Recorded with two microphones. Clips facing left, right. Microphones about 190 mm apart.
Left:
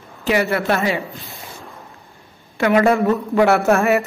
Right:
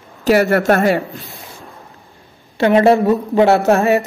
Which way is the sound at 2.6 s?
30° right (ahead or behind).